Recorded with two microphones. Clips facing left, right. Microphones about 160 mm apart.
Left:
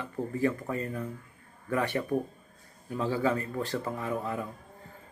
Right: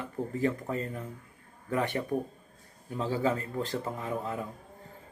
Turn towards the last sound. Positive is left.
turn(degrees=-20)  # may be behind; listen again after turning